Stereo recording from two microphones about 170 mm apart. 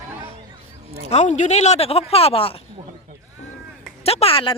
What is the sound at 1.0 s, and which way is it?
Speech, 40° left (ahead or behind).